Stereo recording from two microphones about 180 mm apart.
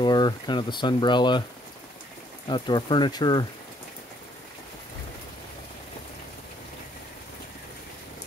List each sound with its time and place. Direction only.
0.0 s speech: 25° left (ahead or behind)
2.4 s speech: 25° left (ahead or behind)